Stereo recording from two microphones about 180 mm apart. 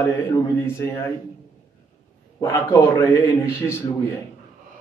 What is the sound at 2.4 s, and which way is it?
A man's voice, 15° left (ahead or behind).